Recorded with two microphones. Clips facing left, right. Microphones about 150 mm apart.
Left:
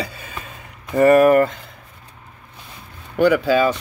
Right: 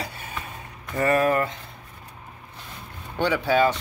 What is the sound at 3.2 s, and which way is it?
Speech, 90° left.